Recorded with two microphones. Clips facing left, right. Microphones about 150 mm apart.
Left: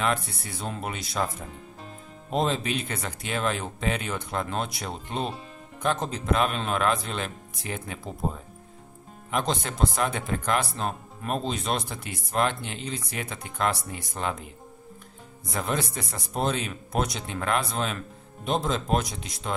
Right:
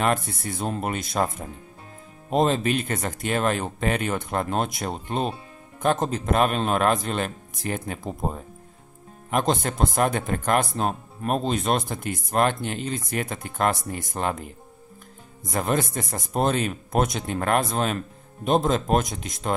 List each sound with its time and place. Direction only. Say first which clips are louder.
0.0 s speech: right 4 dB; 45° right (ahead or behind)
2.3 s speech: right 5 dB; 45° right (ahead or behind)
15.4 s speech: right 5 dB; 45° right (ahead or behind)